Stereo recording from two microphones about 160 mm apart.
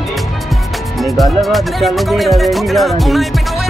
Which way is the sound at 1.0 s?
Centre (ahead or behind).